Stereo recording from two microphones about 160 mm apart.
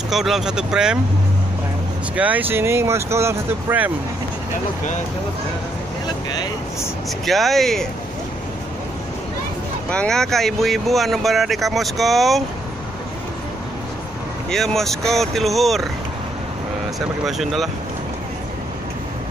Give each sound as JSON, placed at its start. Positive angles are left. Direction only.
{"t": 0.1, "sound": "speech", "side_deg": 0}
{"t": 2.1, "sound": "speech", "side_deg": -10}
{"t": 7.2, "sound": "speech", "side_deg": 0}
{"t": 9.8, "sound": "speech", "side_deg": 5}
{"t": 14.5, "sound": "speech", "side_deg": 0}
{"t": 17.2, "sound": "speech", "side_deg": 0}